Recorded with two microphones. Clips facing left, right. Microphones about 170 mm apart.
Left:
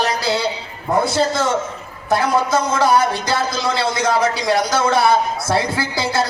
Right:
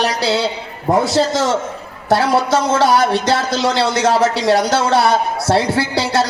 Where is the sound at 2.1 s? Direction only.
75° right (ahead or behind).